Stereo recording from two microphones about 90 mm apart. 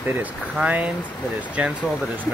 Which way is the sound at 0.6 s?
15° right (ahead or behind).